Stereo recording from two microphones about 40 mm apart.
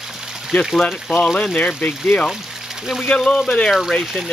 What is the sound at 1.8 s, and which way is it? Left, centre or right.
Speech, left.